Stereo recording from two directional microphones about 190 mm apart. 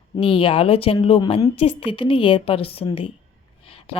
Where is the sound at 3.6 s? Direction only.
30° left (ahead or behind).